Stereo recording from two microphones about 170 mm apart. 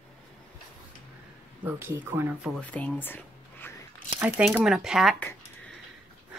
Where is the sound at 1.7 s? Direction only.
10° right (ahead or behind).